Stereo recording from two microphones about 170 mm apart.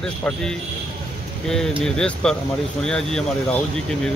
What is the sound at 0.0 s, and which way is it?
Speech, 5° left (ahead or behind).